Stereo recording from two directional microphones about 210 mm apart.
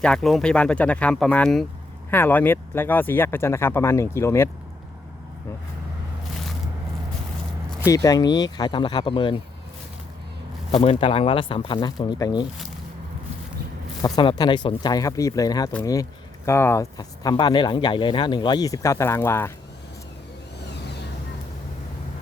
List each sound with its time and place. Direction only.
0.0 s speech: 5° left (ahead or behind)
7.9 s speech: 15° left (ahead or behind)
10.7 s speech: 25° left (ahead or behind)
14.0 s speech: 20° left (ahead or behind)